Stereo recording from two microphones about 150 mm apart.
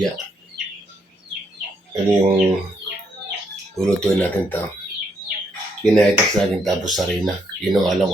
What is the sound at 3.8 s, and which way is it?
Speech, 10° left (ahead or behind).